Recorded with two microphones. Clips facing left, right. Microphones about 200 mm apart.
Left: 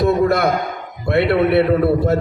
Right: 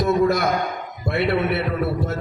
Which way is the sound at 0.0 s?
60° left (ahead or behind).